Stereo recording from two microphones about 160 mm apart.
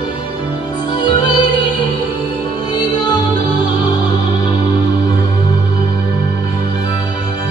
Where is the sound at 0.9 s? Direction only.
30° left (ahead or behind).